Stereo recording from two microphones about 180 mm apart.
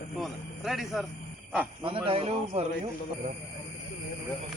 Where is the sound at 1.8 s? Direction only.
30° right (ahead or behind).